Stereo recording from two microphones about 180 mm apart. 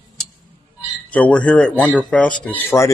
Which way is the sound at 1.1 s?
10° left (ahead or behind).